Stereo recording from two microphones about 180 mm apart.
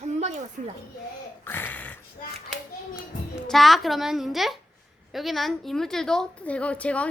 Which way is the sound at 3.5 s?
Centre (ahead or behind).